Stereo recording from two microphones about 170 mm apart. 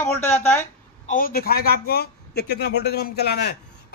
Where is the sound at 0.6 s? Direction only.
50° left (ahead or behind).